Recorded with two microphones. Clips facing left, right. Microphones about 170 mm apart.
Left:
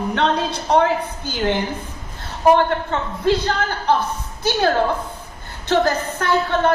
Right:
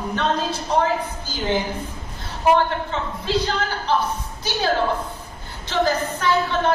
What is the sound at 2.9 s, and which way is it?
A woman's voice, 55° left (ahead or behind).